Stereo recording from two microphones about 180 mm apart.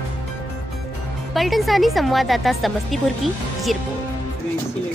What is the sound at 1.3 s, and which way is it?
Speech, centre (ahead or behind).